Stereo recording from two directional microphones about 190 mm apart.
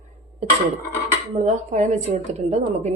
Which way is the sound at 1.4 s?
40° right (ahead or behind).